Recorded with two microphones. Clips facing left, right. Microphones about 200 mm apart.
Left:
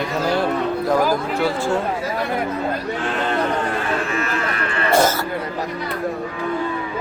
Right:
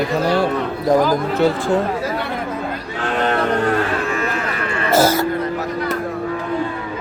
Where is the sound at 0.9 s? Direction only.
20° right (ahead or behind).